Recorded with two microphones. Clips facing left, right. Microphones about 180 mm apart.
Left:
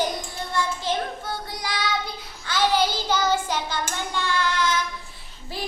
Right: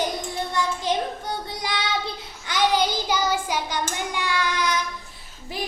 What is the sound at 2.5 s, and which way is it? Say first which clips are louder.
Hands: even; 15° right (ahead or behind).